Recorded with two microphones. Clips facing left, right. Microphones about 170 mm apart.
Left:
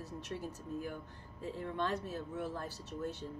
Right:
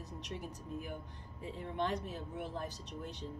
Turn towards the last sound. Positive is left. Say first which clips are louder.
# left 4 dB
turn(degrees=-15)  # may be behind; listen again after turning